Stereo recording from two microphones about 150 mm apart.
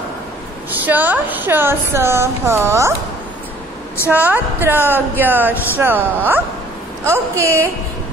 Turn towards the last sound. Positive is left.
turn(degrees=-20)  # may be behind; listen again after turning